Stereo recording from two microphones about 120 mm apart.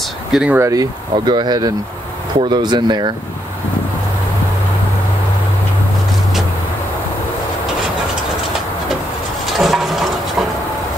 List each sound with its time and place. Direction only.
0.3 s speech: 5° right (ahead or behind)
0.6 s speech: 30° right (ahead or behind)
9.6 s a sound: centre (ahead or behind)